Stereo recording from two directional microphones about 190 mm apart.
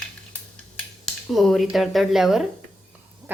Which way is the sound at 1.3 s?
Centre (ahead or behind).